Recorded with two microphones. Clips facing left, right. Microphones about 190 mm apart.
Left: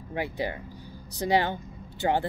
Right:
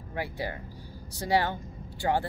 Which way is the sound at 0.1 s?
20° left (ahead or behind).